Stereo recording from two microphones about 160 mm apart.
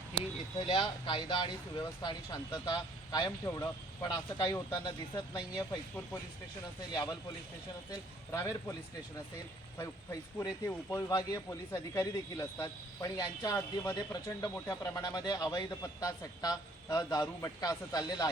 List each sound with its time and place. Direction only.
0.7 s speech: 30° left (ahead or behind)
6.9 s a man's voice: 25° left (ahead or behind)
9.7 s speech: 20° left (ahead or behind)